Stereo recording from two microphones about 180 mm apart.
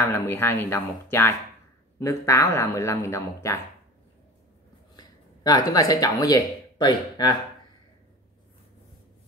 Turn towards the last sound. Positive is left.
turn(degrees=25)  # may be behind; listen again after turning